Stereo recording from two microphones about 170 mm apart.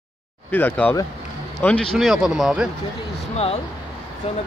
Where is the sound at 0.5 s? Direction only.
10° left (ahead or behind).